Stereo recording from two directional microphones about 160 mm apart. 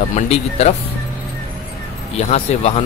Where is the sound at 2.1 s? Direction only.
40° left (ahead or behind).